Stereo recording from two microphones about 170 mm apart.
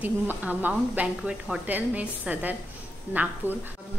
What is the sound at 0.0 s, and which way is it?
A woman's voice, 10° right (ahead or behind).